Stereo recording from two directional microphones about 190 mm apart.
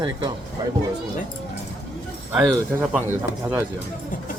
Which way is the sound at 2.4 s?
20° right (ahead or behind).